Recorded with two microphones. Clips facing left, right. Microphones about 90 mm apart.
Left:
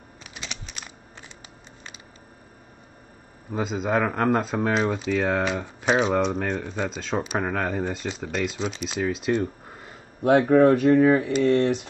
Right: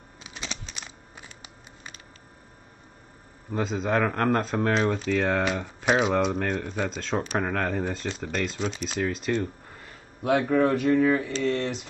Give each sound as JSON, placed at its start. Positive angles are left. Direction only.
{"t": 0.3, "sound": "a sound", "side_deg": 5}
{"t": 3.5, "sound": "speech", "side_deg": 5}
{"t": 6.6, "sound": "speech", "side_deg": 10}
{"t": 10.2, "sound": "speech", "side_deg": 40}